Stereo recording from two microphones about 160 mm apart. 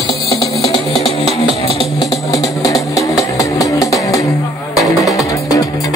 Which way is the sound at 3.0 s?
20° left (ahead or behind).